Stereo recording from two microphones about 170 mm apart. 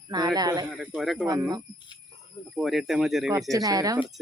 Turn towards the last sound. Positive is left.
turn(degrees=-20)  # may be behind; listen again after turning